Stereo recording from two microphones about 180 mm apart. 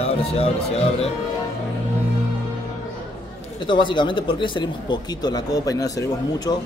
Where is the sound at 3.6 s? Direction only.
25° left (ahead or behind).